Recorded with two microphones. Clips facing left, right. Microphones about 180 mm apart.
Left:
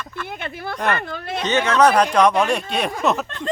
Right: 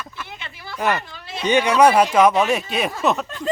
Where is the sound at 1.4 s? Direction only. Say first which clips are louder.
Right 2 dB; 10° right (ahead or behind).